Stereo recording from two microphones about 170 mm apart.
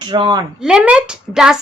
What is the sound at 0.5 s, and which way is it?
A woman's voice, 5° right (ahead or behind).